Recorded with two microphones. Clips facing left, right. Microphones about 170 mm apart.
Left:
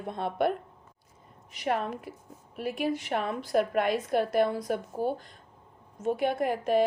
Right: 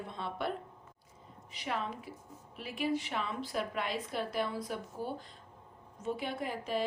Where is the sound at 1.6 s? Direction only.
55° left (ahead or behind).